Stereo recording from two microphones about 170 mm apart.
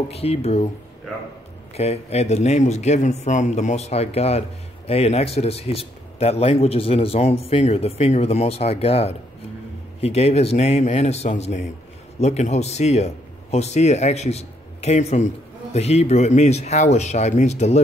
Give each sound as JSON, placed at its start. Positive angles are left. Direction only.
{"t": 0.1, "sound": "speech", "side_deg": 35}
{"t": 1.8, "sound": "speech", "side_deg": 40}